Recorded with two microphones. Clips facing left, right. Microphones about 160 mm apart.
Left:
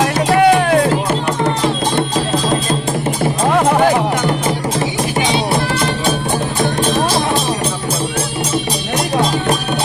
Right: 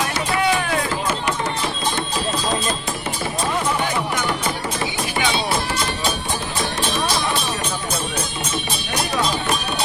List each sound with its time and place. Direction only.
0.3 s music: 55° left (ahead or behind)
3.5 s music: 75° left (ahead or behind)
3.8 s music: 55° left (ahead or behind)
6.6 s music: 50° left (ahead or behind)